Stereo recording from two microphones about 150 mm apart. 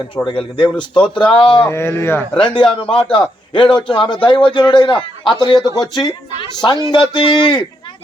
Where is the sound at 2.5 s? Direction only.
35° left (ahead or behind).